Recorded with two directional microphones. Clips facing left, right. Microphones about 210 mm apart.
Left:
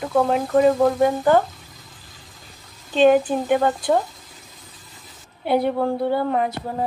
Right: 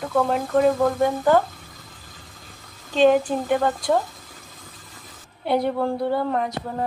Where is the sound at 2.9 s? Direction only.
5° left (ahead or behind).